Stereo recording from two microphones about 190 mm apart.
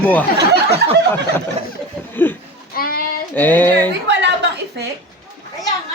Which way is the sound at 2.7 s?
50° left (ahead or behind).